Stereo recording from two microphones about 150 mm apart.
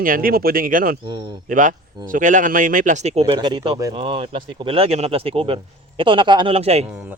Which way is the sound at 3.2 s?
30° right (ahead or behind).